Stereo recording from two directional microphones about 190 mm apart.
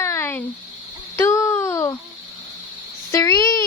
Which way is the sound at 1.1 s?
15° left (ahead or behind).